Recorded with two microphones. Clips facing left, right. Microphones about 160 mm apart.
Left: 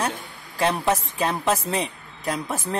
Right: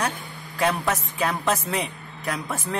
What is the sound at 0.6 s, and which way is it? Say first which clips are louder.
Speech: left 2 dB; 30° left (ahead or behind).